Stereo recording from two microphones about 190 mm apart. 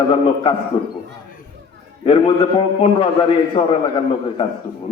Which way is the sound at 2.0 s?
25° left (ahead or behind).